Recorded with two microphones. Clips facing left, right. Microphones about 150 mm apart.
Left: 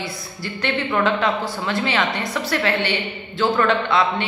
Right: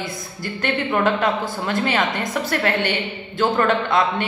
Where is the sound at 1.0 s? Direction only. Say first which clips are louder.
Even; 50° right (ahead or behind).